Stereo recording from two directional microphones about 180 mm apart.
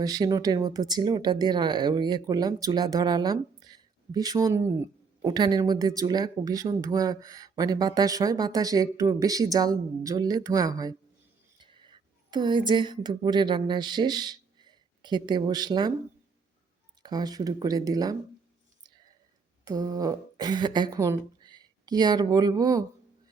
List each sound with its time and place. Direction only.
0.0 s a woman's voice: 20° right (ahead or behind)
17.0 s speech: 20° right (ahead or behind)
19.6 s speech: 20° right (ahead or behind)